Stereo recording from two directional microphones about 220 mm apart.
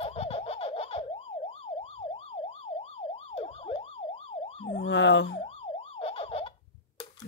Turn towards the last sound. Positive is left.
turn(degrees=25)  # may be behind; listen again after turning